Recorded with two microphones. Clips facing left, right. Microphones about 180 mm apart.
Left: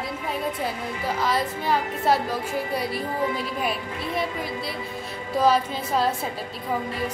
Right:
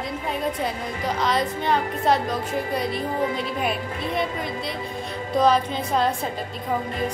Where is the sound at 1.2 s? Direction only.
5° left (ahead or behind).